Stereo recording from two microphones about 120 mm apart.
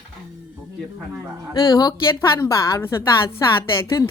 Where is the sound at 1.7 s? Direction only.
35° left (ahead or behind).